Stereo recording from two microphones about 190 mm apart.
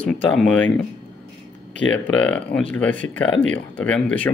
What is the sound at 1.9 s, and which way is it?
Speech, 5° left (ahead or behind).